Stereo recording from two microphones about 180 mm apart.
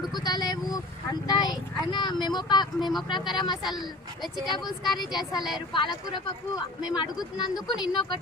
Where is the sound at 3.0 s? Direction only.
25° left (ahead or behind).